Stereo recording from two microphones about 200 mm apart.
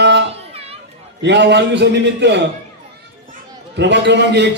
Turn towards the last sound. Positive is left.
turn(degrees=-60)  # may be behind; listen again after turning